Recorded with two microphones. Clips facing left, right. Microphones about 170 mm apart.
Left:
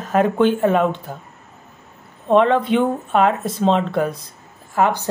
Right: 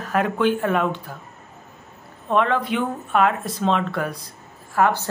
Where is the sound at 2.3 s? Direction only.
25° left (ahead or behind).